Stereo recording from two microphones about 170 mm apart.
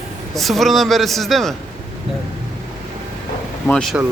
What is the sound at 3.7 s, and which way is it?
Speech, 5° left (ahead or behind).